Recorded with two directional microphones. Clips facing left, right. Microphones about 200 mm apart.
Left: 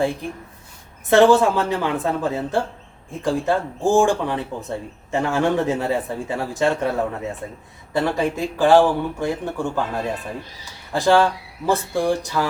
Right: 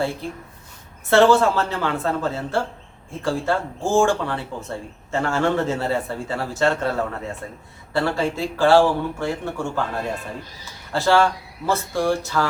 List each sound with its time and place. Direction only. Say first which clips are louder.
0.2 s speech: left 1 dB; 15° left (ahead or behind)